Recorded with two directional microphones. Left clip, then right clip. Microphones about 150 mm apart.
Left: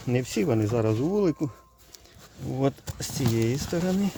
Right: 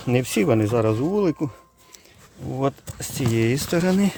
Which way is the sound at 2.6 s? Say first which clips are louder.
Right 3 dB; centre (ahead or behind).